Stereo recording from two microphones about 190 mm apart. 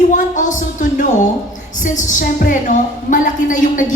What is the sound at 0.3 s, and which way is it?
A woman's voice, 40° left (ahead or behind).